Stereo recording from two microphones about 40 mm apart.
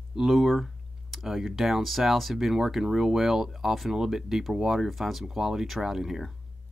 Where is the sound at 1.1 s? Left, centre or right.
Centre.